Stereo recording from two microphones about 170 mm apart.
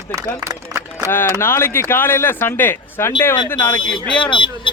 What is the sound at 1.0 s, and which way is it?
Speech, 15° left (ahead or behind).